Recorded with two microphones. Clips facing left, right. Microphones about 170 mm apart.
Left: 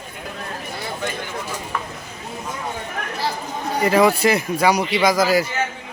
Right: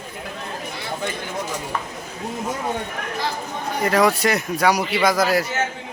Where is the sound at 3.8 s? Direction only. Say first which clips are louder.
Left 2 dB; 5° left (ahead or behind).